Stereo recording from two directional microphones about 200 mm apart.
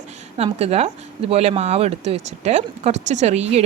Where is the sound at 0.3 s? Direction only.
30° right (ahead or behind).